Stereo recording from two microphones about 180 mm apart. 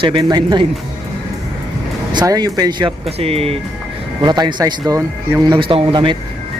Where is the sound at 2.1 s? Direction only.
20° right (ahead or behind).